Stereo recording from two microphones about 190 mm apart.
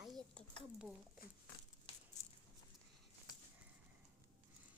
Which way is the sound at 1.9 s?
30° left (ahead or behind).